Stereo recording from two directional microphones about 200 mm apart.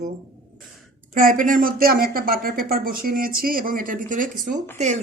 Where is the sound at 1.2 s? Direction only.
45° right (ahead or behind).